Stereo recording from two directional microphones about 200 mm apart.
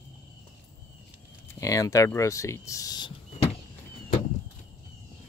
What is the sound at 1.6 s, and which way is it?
Speech, 15° left (ahead or behind).